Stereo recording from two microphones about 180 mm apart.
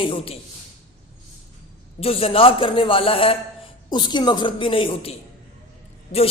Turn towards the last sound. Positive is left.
turn(degrees=50)  # may be behind; listen again after turning